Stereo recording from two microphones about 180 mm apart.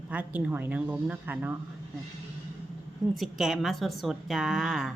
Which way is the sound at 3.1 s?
Centre (ahead or behind).